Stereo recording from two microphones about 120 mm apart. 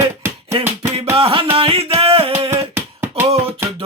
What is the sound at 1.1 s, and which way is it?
Music, 50° right (ahead or behind).